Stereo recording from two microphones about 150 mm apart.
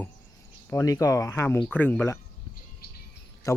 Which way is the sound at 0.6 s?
20° left (ahead or behind).